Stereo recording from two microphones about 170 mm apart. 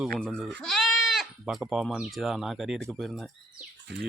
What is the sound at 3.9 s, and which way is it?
Speech, 90° right.